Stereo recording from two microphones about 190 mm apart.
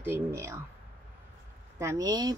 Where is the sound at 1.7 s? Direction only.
15° right (ahead or behind).